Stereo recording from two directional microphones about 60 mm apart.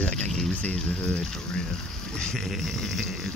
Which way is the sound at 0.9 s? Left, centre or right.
Left.